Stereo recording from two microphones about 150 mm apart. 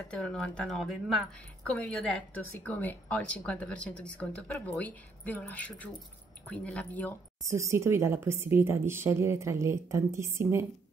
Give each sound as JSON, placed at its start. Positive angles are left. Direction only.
{"t": 0.1, "sound": "speech", "side_deg": 5}
{"t": 7.4, "sound": "a woman's voice", "side_deg": -20}